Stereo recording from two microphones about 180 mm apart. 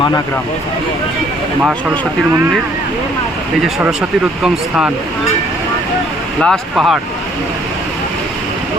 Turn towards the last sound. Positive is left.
turn(degrees=0)  # may be behind; listen again after turning